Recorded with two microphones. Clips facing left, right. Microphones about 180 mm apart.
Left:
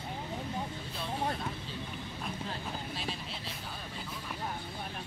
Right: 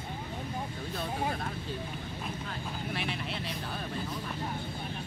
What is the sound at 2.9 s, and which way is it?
Speech, 65° right (ahead or behind).